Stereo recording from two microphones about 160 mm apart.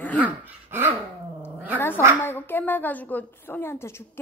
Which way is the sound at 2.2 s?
10° left (ahead or behind).